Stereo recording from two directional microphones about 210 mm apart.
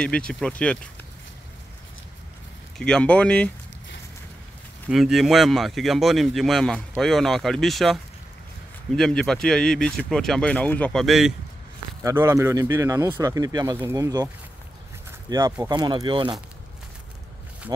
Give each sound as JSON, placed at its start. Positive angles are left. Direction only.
{"t": 0.0, "sound": "speech", "side_deg": 5}
{"t": 2.8, "sound": "speech", "side_deg": 5}
{"t": 4.9, "sound": "speech", "side_deg": 0}
{"t": 12.0, "sound": "speech", "side_deg": -10}